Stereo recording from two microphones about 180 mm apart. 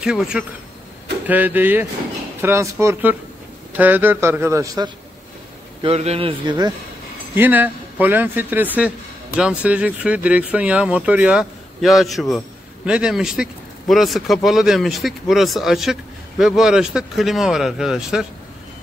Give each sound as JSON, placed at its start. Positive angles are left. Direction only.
{"t": 0.0, "sound": "speech", "side_deg": -5}
{"t": 5.8, "sound": "a man's voice", "side_deg": -35}
{"t": 7.3, "sound": "speech", "side_deg": -10}